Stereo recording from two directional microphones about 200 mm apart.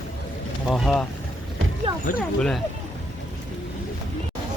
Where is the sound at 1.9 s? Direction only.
20° right (ahead or behind).